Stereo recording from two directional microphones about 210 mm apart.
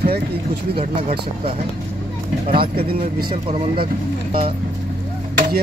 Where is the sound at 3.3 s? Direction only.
30° right (ahead or behind).